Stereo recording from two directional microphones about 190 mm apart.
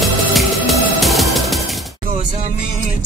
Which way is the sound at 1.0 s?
Centre (ahead or behind).